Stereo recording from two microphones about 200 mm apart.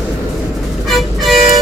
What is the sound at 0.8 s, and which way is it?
Vehicle, centre (ahead or behind).